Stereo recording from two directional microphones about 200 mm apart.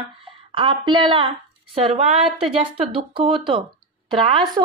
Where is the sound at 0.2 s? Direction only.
25° right (ahead or behind).